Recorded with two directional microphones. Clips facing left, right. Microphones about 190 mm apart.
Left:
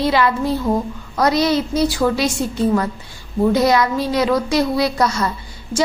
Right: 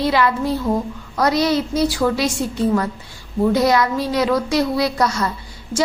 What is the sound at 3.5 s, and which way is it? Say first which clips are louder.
A woman's voice: left 1 dB; 20° left (ahead or behind).